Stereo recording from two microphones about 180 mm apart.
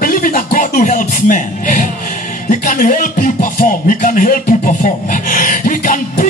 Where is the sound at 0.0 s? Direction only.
50° left (ahead or behind).